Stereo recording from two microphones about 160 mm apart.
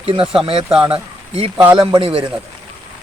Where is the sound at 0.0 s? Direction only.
35° right (ahead or behind).